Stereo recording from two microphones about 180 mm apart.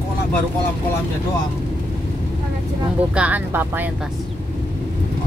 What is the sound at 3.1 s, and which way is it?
Speech, 10° right (ahead or behind).